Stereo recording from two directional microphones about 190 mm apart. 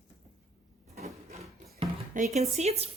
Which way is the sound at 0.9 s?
35° right (ahead or behind).